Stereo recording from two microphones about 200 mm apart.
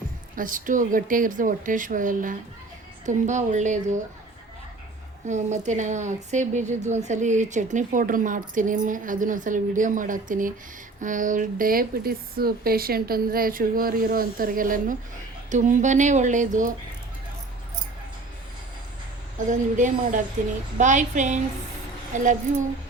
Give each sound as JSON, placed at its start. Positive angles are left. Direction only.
{"t": 0.3, "sound": "speech", "side_deg": -40}
{"t": 5.2, "sound": "speech", "side_deg": -35}
{"t": 19.5, "sound": "speech", "side_deg": -40}